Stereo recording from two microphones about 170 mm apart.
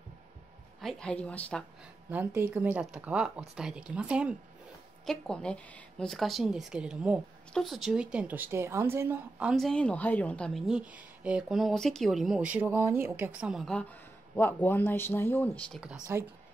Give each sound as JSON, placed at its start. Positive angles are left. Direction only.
{"t": 0.7, "sound": "a woman's voice", "side_deg": 5}
{"t": 2.0, "sound": "a woman's voice", "side_deg": -10}
{"t": 5.0, "sound": "a woman's voice", "side_deg": 5}
{"t": 15.8, "sound": "speech", "side_deg": -10}